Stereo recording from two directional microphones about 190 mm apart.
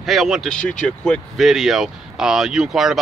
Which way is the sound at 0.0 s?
Centre (ahead or behind).